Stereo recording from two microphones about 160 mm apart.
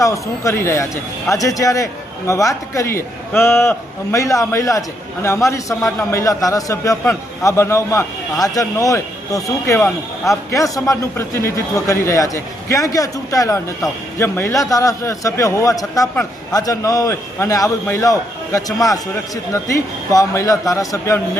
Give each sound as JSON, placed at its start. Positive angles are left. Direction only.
{"t": 0.0, "sound": "a man's voice", "side_deg": 20}